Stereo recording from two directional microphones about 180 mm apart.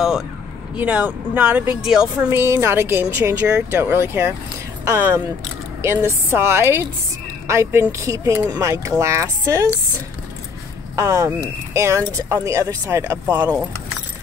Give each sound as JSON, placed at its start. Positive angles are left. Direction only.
{"t": 0.7, "sound": "speech", "side_deg": -5}
{"t": 2.2, "sound": "speech", "side_deg": -15}
{"t": 11.0, "sound": "speech", "side_deg": -15}